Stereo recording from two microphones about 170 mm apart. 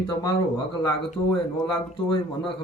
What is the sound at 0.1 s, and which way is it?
A man's voice, 20° left (ahead or behind).